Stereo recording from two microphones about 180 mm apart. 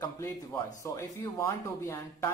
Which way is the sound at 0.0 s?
15° left (ahead or behind).